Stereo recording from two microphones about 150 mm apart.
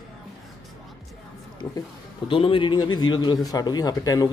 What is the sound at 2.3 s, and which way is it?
A man's voice, 35° left (ahead or behind).